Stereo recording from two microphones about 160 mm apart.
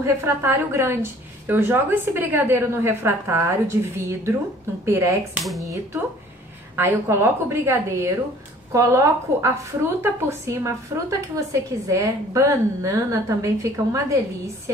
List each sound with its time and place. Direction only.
0.0 s a woman's voice: 15° right (ahead or behind)
5.4 s speech: centre (ahead or behind)
6.8 s a woman's voice: 15° right (ahead or behind)